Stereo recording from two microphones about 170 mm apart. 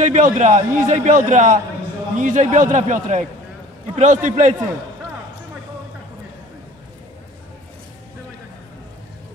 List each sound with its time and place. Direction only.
0.0 s a man's voice: 45° right (ahead or behind)